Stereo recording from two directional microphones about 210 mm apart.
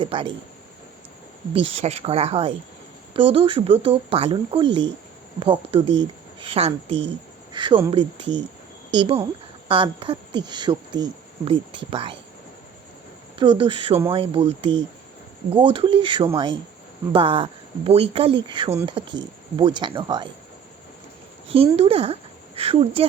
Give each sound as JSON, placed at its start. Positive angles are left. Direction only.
{"t": 0.0, "sound": "speech", "side_deg": -25}
{"t": 1.5, "sound": "speech", "side_deg": -30}
{"t": 8.9, "sound": "speech", "side_deg": -25}
{"t": 13.4, "sound": "speech", "side_deg": -25}
{"t": 21.4, "sound": "speech", "side_deg": -25}